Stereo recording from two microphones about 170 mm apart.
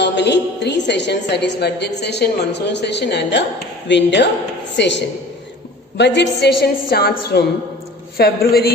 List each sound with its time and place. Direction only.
0.0 s a woman's voice: 90° left; by 8.7 s 65° left (ahead or behind)